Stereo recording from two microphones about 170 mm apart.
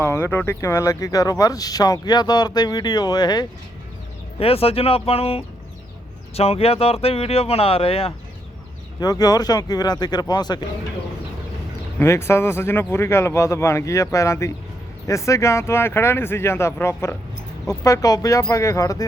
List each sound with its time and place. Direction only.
0.0 s speech: 15° left (ahead or behind)
4.4 s speech: 35° left (ahead or behind)
9.0 s speech: 25° left (ahead or behind)
11.9 s speech: 15° left (ahead or behind)